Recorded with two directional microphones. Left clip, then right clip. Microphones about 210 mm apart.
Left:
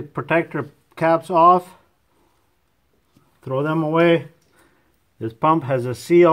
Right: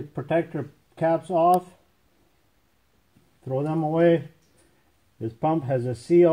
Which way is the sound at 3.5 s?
40° left (ahead or behind).